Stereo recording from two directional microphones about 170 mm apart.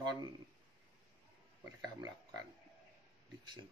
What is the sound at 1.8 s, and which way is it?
Speech, 20° right (ahead or behind).